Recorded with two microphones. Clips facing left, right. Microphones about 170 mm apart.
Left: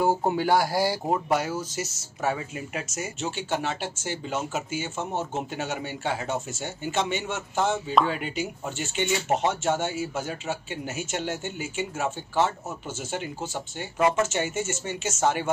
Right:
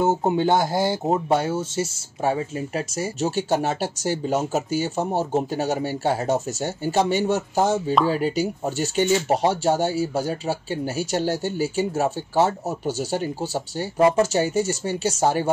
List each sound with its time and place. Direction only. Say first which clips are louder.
0.0 s speech: right 4 dB; 20° right (ahead or behind)